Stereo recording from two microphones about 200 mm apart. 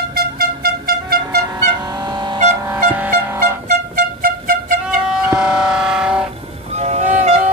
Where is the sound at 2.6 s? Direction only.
10° right (ahead or behind).